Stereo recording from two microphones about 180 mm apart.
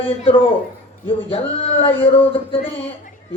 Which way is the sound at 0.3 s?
30° left (ahead or behind).